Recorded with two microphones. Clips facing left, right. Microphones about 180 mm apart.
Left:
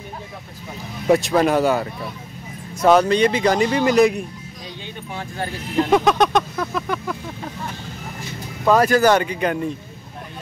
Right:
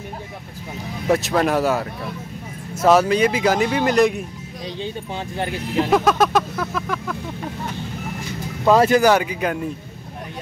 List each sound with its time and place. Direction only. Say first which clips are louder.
1.0 s speech: left 2 dB; centre (ahead or behind)
5.9 s speech: left 1 dB; centre (ahead or behind)
8.7 s speech: right 1 dB; 25° right (ahead or behind)
9.0 s speech: even; 5° right (ahead or behind)